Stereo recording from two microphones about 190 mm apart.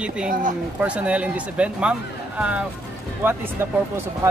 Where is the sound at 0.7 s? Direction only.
5° right (ahead or behind).